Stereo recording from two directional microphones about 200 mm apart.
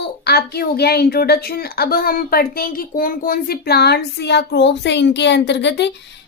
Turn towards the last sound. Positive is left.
turn(degrees=60)  # may be behind; listen again after turning